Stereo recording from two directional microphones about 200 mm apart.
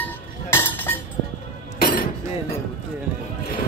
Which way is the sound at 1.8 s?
45° left (ahead or behind).